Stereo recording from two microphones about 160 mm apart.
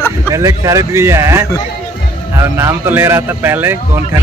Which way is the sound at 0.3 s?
20° right (ahead or behind).